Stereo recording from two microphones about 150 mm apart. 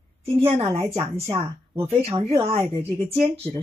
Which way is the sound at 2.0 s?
40° right (ahead or behind).